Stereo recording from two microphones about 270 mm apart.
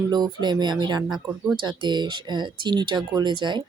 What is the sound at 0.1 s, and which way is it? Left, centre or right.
Speech, centre.